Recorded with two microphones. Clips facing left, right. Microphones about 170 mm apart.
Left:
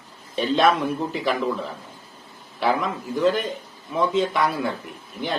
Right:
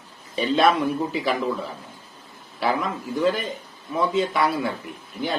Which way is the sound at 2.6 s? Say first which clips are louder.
Left 1 dB; centre (ahead or behind).